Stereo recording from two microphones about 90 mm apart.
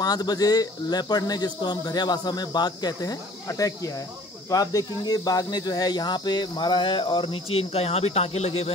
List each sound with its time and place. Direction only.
0.0 s speech: 50° left (ahead or behind); by 8.7 s 90° left